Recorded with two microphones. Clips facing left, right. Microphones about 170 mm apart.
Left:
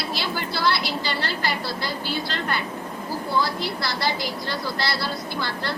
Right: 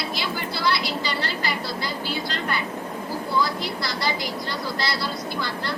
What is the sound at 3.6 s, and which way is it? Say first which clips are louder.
A woman's voice: left 1 dB; 60° left (ahead or behind).